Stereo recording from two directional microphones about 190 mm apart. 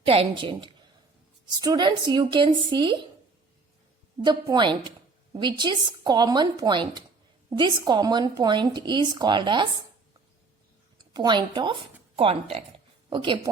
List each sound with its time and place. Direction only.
0.0 s speech: 30° right (ahead or behind)
4.2 s speech: 25° right (ahead or behind)
10.9 s speech: 20° right (ahead or behind)